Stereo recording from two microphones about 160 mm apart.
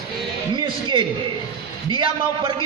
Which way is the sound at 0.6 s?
30° right (ahead or behind).